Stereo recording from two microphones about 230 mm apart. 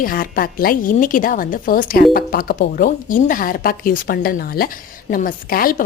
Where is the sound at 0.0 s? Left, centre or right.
Left.